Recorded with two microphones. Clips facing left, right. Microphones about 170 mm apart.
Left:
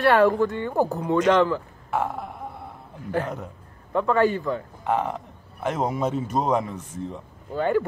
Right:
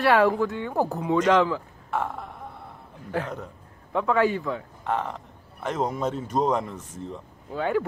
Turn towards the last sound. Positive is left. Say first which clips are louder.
# left 3 dB
turn(degrees=0)  # may be behind; listen again after turning